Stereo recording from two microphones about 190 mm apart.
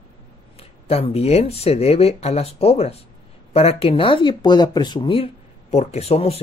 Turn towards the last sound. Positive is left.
turn(degrees=30)  # may be behind; listen again after turning